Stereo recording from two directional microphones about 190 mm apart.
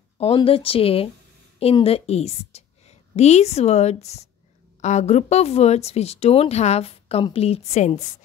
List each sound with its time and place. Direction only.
0.2 s a woman's voice: 30° left (ahead or behind)